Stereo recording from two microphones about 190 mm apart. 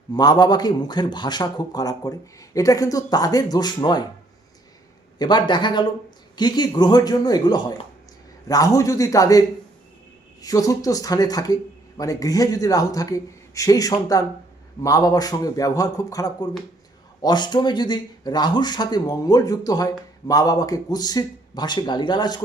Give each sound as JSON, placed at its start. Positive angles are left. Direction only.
{"t": 0.1, "sound": "speech", "side_deg": 20}
{"t": 5.2, "sound": "a man's voice", "side_deg": 25}
{"t": 10.4, "sound": "speech", "side_deg": 20}